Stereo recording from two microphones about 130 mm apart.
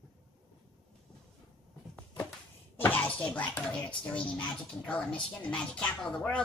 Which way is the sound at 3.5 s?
10° left (ahead or behind).